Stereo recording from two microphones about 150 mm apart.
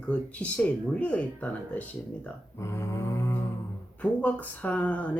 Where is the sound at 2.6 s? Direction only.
20° left (ahead or behind).